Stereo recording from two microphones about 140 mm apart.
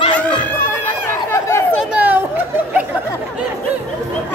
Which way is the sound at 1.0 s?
20° left (ahead or behind).